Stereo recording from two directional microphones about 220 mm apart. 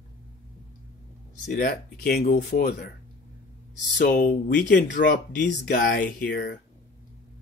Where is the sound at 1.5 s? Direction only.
40° left (ahead or behind).